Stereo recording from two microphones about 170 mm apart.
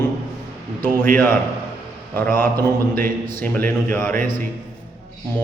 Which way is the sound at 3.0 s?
55° right (ahead or behind).